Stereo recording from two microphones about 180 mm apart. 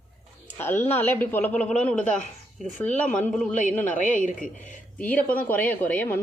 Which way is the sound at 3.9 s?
45° left (ahead or behind).